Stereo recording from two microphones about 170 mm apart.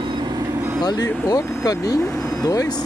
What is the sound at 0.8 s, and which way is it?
Speech, 20° left (ahead or behind).